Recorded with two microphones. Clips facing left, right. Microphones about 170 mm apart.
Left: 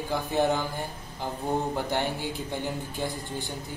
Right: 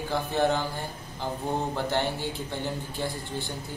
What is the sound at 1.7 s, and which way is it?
Speech, 15° left (ahead or behind).